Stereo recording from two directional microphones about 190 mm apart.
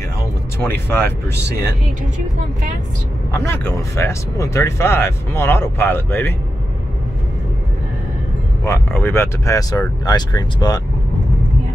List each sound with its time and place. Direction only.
0.7 s speech: 10° left (ahead or behind)
3.3 s speech: 10° left (ahead or behind)
8.6 s speech: 15° left (ahead or behind)